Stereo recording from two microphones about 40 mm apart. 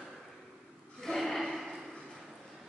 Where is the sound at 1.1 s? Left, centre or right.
Centre.